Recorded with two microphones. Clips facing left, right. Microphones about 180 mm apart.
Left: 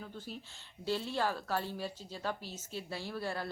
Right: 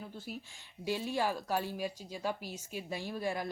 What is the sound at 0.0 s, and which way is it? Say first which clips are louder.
A woman's voice: right 1 dB; 10° right (ahead or behind).